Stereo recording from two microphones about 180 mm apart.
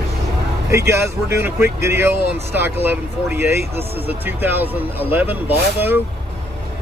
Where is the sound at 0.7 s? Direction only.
15° right (ahead or behind).